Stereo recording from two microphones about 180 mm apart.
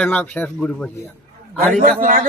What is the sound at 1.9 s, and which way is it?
Speech, 50° right (ahead or behind).